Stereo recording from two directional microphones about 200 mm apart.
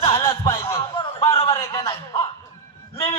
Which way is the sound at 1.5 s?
15° left (ahead or behind).